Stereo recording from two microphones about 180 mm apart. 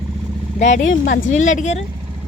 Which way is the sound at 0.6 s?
45° left (ahead or behind).